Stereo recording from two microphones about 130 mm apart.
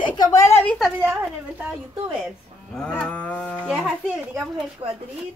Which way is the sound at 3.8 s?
5° right (ahead or behind).